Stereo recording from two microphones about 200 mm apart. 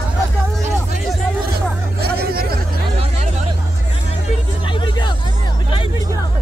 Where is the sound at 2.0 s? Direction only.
50° right (ahead or behind).